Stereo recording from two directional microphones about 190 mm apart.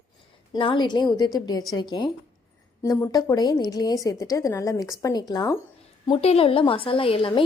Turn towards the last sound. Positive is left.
turn(degrees=30)  # may be behind; listen again after turning